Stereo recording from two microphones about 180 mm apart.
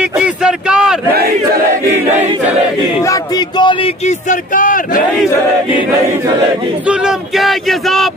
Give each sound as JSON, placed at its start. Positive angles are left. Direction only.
{"t": 0.2, "sound": "a sound", "side_deg": -5}
{"t": 3.1, "sound": "a man's voice", "side_deg": 25}
{"t": 4.3, "sound": "speech", "side_deg": 50}
{"t": 6.9, "sound": "speech", "side_deg": 0}